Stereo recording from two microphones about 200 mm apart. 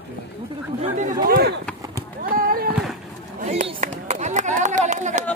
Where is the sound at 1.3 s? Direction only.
50° right (ahead or behind).